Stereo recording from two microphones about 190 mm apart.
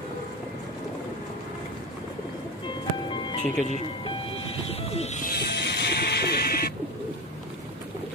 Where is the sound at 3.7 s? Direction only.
30° left (ahead or behind).